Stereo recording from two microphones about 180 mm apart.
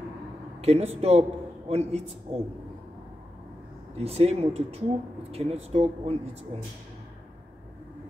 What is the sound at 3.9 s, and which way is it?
Speech, 35° right (ahead or behind).